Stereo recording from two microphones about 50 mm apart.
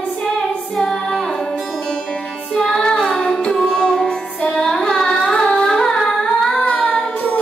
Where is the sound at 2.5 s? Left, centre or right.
Centre.